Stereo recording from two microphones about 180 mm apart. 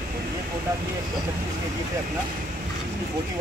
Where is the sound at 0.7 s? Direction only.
20° right (ahead or behind).